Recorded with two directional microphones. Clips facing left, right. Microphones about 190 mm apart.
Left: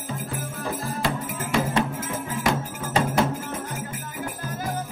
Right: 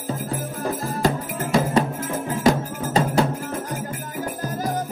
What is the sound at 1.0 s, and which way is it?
Music, 35° right (ahead or behind).